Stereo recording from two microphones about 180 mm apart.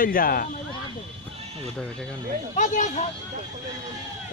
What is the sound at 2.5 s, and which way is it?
Speech, 45° left (ahead or behind).